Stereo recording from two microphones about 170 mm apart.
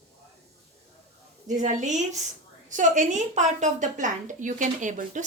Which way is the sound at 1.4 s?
45° right (ahead or behind).